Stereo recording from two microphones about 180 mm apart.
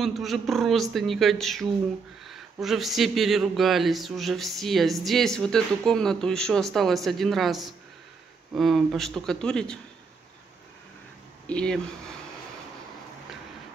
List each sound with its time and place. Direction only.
0.0 s speech: centre (ahead or behind)
11.4 s speech: 5° left (ahead or behind)